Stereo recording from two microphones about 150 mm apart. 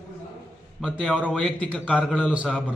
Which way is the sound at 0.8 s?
Centre (ahead or behind).